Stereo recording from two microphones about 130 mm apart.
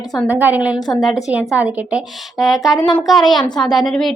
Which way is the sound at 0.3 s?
10° right (ahead or behind).